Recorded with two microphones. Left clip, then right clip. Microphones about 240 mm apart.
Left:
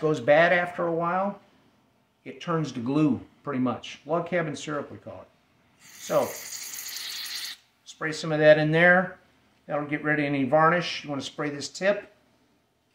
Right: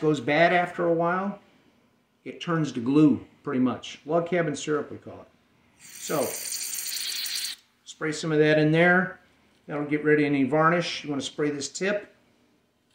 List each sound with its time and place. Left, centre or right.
0.1 s speech: centre
2.2 s speech: centre
5.8 s ratchet: centre
7.8 s speech: centre